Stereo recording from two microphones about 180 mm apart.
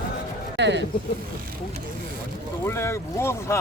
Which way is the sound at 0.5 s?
75° right (ahead or behind).